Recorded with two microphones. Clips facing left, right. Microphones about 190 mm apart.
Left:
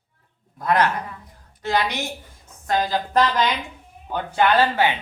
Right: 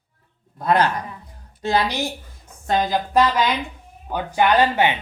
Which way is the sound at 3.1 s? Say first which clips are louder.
Right 2 dB; 5° right (ahead or behind).